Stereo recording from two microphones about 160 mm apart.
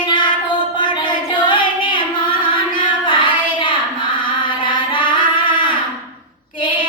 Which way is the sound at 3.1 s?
30° left (ahead or behind).